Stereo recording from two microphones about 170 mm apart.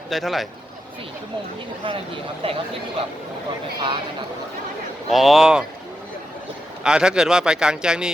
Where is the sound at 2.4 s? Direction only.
30° right (ahead or behind).